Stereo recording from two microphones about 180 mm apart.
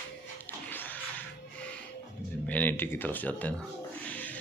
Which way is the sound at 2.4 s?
10° left (ahead or behind).